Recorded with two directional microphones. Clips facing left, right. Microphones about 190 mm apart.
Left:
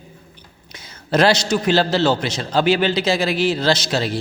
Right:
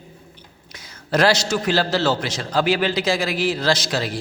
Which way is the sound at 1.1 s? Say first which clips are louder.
Left 2 dB; 20° left (ahead or behind).